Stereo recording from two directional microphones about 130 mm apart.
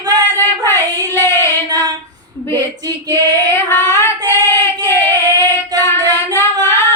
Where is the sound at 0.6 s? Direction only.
20° left (ahead or behind).